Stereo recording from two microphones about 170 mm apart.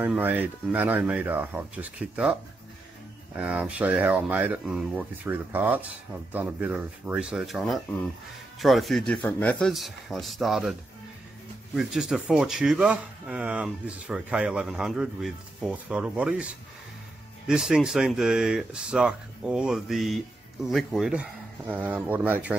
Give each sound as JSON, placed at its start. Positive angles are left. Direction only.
{"t": 0.0, "sound": "speech", "side_deg": -10}
{"t": 3.3, "sound": "speech", "side_deg": -5}